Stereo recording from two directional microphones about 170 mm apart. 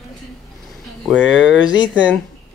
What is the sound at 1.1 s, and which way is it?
Speech, 5° right (ahead or behind).